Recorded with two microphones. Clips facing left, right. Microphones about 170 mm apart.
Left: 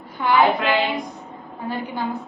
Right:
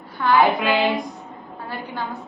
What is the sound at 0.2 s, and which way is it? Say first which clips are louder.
Speech: right 1 dB; 20° left (ahead or behind).